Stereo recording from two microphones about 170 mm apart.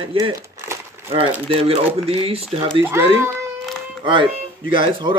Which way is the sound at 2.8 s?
15° right (ahead or behind).